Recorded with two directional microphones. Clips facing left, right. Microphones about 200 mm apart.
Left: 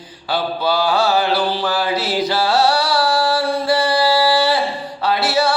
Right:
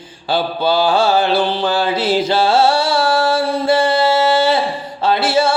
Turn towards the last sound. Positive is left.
turn(degrees=-25)  # may be behind; listen again after turning